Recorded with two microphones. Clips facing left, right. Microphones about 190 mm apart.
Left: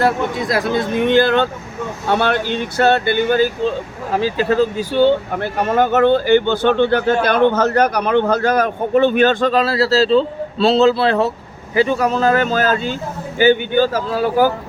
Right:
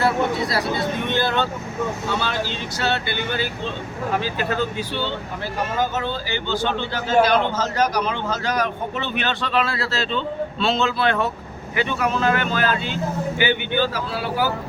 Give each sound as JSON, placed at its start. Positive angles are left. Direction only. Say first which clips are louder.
{"t": 0.0, "sound": "speech", "louder": "left 3 dB", "side_deg": 50}
{"t": 2.0, "sound": "speech", "louder": "left 7 dB", "side_deg": 60}
{"t": 4.9, "sound": "speech", "louder": "left 17 dB", "side_deg": 55}